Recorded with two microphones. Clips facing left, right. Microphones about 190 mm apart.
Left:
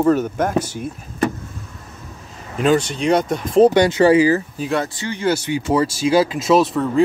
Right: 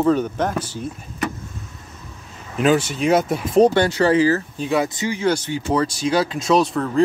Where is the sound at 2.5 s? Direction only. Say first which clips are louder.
Left 1 dB; 5° right (ahead or behind).